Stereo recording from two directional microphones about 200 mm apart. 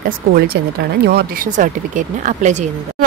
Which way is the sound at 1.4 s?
40° right (ahead or behind).